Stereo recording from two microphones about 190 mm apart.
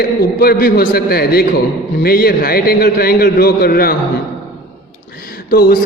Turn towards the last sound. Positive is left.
turn(degrees=50)  # may be behind; listen again after turning